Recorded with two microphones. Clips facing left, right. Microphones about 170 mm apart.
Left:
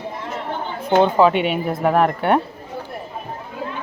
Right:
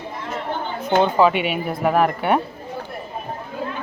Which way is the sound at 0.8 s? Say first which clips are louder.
Left 2 dB; 30° left (ahead or behind).